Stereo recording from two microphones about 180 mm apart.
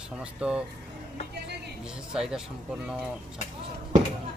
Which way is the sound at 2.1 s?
5° right (ahead or behind).